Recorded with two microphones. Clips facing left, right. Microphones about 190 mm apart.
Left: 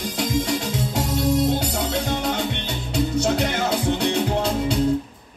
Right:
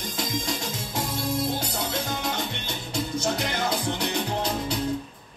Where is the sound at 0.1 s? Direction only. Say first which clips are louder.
Left 7 dB; 70° left (ahead or behind).